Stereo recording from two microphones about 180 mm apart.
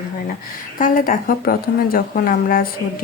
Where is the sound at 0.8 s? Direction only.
50° left (ahead or behind).